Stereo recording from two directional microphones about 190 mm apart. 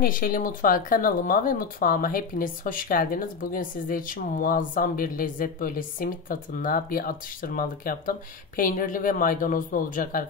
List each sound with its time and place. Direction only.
0.0 s speech: 50° left (ahead or behind)